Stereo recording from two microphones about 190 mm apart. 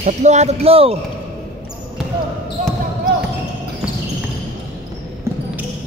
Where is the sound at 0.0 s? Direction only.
35° right (ahead or behind).